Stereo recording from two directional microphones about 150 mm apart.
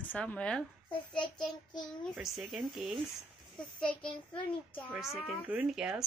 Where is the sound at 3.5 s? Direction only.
5° left (ahead or behind).